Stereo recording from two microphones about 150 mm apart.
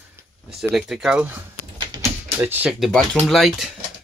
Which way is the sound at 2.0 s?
15° right (ahead or behind).